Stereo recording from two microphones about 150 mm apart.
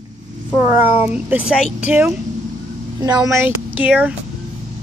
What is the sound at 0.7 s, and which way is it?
Speech, 10° right (ahead or behind).